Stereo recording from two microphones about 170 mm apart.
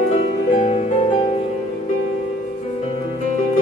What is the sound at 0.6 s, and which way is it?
Music, 40° left (ahead or behind).